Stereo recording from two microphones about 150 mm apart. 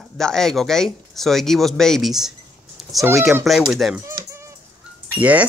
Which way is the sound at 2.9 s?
20° right (ahead or behind).